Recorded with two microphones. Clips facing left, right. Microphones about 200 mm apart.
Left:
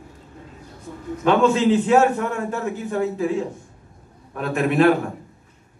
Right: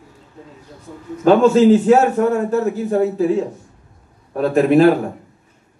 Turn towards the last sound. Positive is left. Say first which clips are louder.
# right 6 dB
turn(degrees=-35)  # may be behind; listen again after turning